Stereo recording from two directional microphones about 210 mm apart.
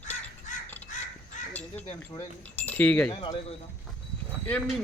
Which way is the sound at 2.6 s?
10° left (ahead or behind).